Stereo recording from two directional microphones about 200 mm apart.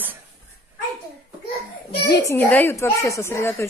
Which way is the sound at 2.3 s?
10° left (ahead or behind).